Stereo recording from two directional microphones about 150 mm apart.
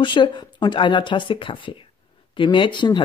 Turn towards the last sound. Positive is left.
turn(degrees=30)  # may be behind; listen again after turning